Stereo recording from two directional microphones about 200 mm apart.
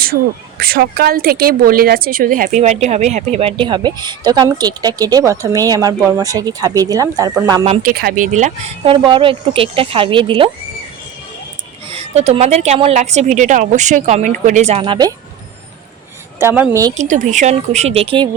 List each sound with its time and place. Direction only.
0.6 s a woman's voice: 50° right (ahead or behind); by 7.6 s 15° right (ahead or behind)
7.8 s speech: 45° right (ahead or behind); by 10.5 s 25° right (ahead or behind)
11.9 s a woman's voice: 30° right (ahead or behind)
16.4 s speech: 10° right (ahead or behind)
17.0 s a woman's voice: 35° right (ahead or behind)